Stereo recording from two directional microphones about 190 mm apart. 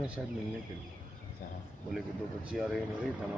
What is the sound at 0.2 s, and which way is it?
Speech, 5° right (ahead or behind).